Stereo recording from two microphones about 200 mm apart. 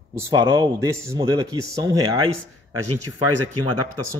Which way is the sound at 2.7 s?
90° right.